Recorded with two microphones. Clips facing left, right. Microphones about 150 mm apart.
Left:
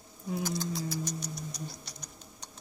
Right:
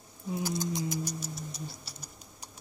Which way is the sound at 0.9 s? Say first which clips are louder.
Right 1 dB; 5° right (ahead or behind).